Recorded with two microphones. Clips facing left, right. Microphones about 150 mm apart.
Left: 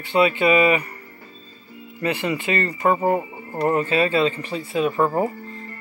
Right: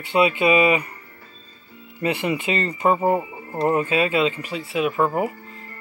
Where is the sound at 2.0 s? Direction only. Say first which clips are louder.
Right 1 dB; 20° right (ahead or behind).